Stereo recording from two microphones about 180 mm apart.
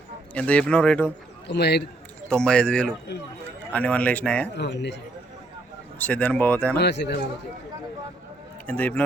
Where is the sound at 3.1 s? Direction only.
70° left (ahead or behind).